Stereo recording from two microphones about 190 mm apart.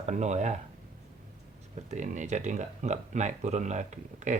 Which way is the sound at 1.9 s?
40° right (ahead or behind).